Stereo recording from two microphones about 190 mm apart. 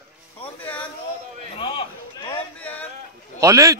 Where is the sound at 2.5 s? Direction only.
5° left (ahead or behind).